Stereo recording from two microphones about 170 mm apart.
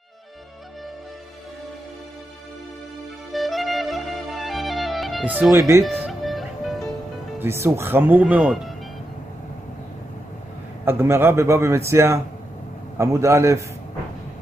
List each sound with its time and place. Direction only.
3.3 s music: centre (ahead or behind)
5.5 s speech: 20° right (ahead or behind)
6.0 s music: centre (ahead or behind)
7.3 s speech: 15° right (ahead or behind)
10.9 s speech: 15° right (ahead or behind)